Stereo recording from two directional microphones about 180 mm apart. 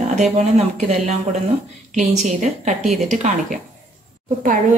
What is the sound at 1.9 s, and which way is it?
A woman's voice, 45° right (ahead or behind).